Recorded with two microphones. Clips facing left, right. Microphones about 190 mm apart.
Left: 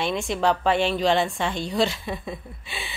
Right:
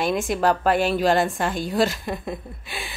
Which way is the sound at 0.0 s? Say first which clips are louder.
Right 2 dB; centre (ahead or behind).